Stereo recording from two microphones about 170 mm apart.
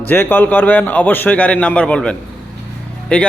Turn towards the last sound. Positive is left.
turn(degrees=5)  # may be behind; listen again after turning